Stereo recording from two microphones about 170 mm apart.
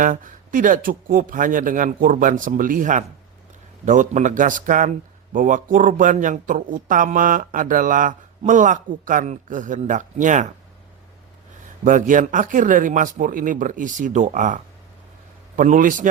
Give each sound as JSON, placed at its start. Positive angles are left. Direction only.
{"t": 0.0, "sound": "speech", "side_deg": -50}
{"t": 11.9, "sound": "speech", "side_deg": -50}